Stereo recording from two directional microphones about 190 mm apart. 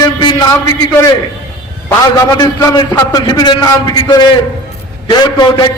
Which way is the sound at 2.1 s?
20° left (ahead or behind).